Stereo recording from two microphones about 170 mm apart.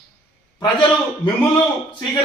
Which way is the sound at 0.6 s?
30° left (ahead or behind).